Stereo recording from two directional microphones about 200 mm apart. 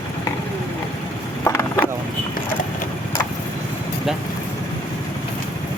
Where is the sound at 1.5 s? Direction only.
15° left (ahead or behind).